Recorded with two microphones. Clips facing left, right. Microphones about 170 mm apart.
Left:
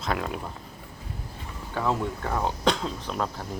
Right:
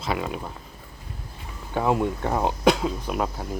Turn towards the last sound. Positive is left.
turn(degrees=-10)  # may be behind; listen again after turning